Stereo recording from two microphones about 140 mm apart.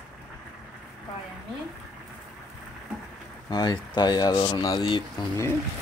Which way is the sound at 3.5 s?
30° left (ahead or behind).